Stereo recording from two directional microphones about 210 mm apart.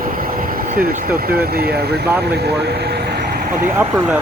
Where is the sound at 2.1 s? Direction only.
50° right (ahead or behind).